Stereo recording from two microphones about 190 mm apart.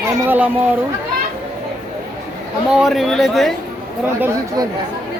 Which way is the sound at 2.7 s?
5° right (ahead or behind).